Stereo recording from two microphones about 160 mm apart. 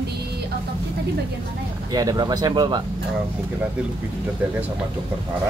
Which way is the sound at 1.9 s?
25° right (ahead or behind).